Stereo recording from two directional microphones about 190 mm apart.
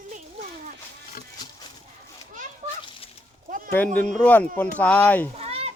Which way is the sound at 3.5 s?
45° right (ahead or behind).